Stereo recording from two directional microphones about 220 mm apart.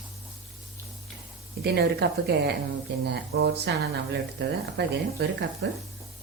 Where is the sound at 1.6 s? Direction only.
45° right (ahead or behind).